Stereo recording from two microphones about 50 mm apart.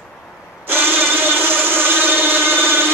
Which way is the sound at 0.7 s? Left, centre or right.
Right.